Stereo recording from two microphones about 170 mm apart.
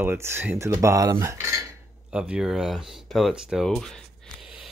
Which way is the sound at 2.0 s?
5° right (ahead or behind).